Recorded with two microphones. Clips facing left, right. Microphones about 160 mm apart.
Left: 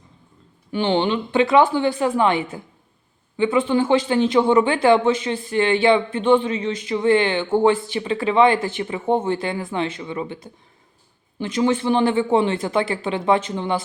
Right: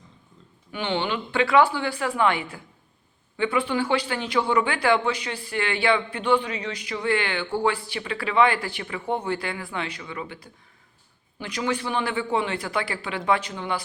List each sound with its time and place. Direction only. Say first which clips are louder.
0.7 s speech: left 7 dB; 30° left (ahead or behind)